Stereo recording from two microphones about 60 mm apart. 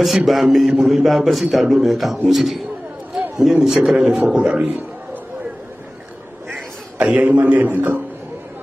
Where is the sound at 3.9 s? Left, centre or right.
Centre.